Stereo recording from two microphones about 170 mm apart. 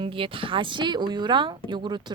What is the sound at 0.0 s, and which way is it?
Speech, 30° right (ahead or behind).